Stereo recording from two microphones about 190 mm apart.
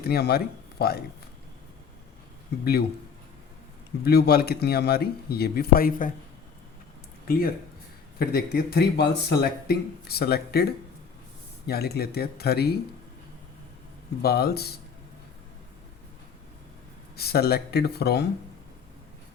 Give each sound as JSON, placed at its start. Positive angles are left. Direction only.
{"t": 0.0, "sound": "speech", "side_deg": 55}
{"t": 4.0, "sound": "speech", "side_deg": 55}
{"t": 7.3, "sound": "speech", "side_deg": 50}
{"t": 14.2, "sound": "speech", "side_deg": 55}
{"t": 17.2, "sound": "speech", "side_deg": 55}